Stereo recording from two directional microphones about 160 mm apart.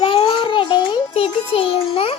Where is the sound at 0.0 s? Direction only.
35° left (ahead or behind).